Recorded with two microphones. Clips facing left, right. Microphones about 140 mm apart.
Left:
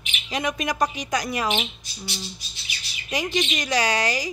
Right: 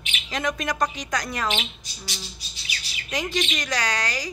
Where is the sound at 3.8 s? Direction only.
10° left (ahead or behind).